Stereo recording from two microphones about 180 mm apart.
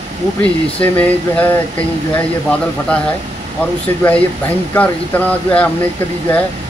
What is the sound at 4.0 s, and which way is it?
Speech, 10° left (ahead or behind).